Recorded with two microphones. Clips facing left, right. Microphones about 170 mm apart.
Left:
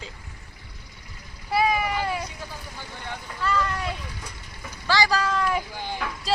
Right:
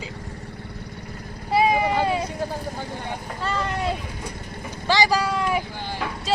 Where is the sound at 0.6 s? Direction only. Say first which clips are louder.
Right 12 dB; 60° right (ahead or behind).